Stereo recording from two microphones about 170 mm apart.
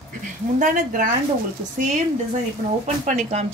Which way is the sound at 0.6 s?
50° right (ahead or behind).